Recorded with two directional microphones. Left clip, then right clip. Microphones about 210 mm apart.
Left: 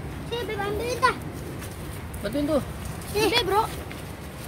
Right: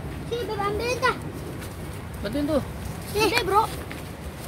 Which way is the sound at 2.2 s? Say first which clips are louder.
Even; centre (ahead or behind).